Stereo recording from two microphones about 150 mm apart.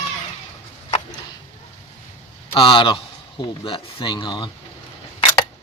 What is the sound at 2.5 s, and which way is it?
Speech, 35° left (ahead or behind).